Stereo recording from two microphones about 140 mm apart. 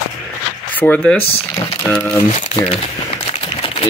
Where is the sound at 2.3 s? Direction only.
45° left (ahead or behind).